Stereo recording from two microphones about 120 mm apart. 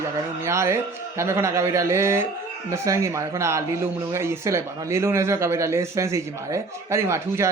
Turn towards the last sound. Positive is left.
turn(degrees=-25)  # may be behind; listen again after turning